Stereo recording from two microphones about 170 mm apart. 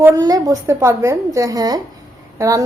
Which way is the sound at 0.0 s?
20° right (ahead or behind).